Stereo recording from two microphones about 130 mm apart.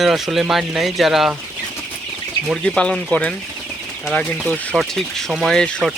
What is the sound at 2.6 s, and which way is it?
Speech, 5° left (ahead or behind).